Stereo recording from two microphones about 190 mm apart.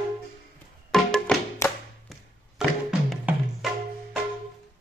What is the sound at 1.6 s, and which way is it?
Music, 15° left (ahead or behind).